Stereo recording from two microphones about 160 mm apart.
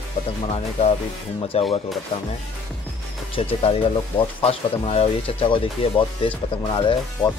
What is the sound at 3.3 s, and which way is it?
Speech, 35° left (ahead or behind).